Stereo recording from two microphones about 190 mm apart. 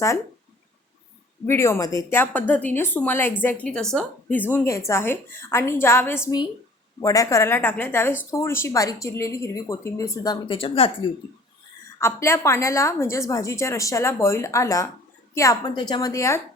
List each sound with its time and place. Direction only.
1.5 s speech: 15° left (ahead or behind)
11.9 s a woman's voice: 15° left (ahead or behind)